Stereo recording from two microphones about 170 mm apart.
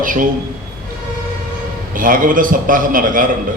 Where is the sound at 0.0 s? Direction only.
55° right (ahead or behind).